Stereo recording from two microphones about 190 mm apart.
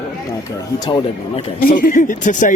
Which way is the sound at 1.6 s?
45° left (ahead or behind).